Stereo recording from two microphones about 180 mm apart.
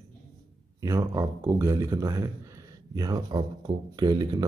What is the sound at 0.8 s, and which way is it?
A man's voice, 20° right (ahead or behind).